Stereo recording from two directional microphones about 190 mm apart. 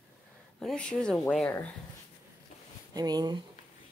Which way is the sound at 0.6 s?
5° left (ahead or behind).